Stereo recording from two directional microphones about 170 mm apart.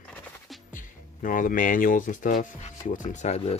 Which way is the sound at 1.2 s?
50° left (ahead or behind).